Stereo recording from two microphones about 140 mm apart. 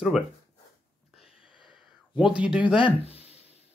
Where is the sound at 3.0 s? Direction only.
45° left (ahead or behind).